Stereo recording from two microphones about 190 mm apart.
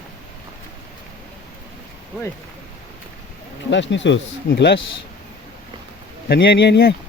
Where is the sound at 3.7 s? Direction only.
70° left (ahead or behind).